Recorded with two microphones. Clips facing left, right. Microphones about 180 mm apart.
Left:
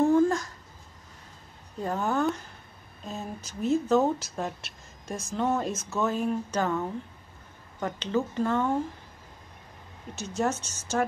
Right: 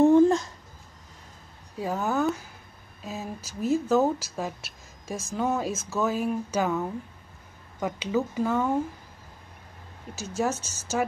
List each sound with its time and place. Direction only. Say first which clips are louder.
0.0 s a sound: right 4 dB; 20° right (ahead or behind)
1.8 s speech: right 1 dB; 5° right (ahead or behind)
10.1 s speech: right 1 dB; 5° right (ahead or behind)